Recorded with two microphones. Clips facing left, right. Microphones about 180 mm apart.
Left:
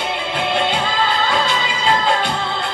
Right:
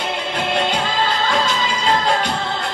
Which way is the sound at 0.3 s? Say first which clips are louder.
Left 1 dB; 45° right (ahead or behind).